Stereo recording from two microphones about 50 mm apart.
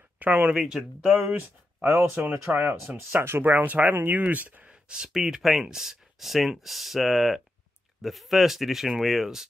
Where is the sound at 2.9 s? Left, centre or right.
Right.